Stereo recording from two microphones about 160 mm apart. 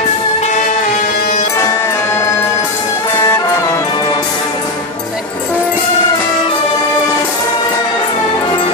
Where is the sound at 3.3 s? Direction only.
15° left (ahead or behind).